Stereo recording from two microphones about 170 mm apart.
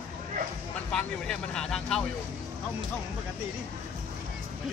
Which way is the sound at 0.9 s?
5° left (ahead or behind).